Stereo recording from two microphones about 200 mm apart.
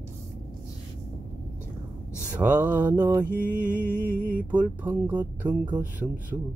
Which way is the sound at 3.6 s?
40° right (ahead or behind).